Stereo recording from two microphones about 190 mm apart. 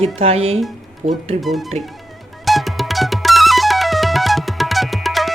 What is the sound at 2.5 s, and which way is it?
Music, centre (ahead or behind).